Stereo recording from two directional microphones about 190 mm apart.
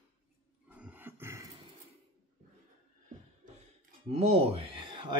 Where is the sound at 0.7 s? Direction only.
10° right (ahead or behind).